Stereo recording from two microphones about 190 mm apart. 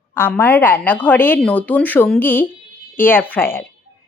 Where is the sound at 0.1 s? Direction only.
10° left (ahead or behind).